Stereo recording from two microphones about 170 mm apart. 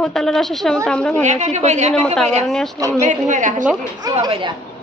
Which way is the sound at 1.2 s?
45° right (ahead or behind).